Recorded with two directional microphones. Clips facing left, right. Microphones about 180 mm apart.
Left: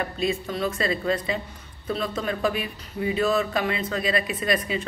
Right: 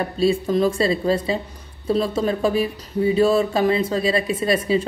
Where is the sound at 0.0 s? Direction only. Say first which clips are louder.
Right 7 dB; 30° right (ahead or behind).